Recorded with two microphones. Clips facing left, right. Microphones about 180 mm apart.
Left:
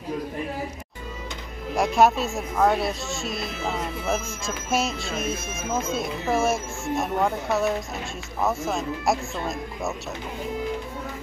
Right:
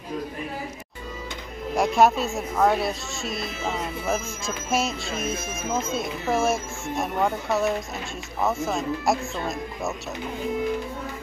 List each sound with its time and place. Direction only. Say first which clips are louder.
1.8 s speech: even; centre (ahead or behind)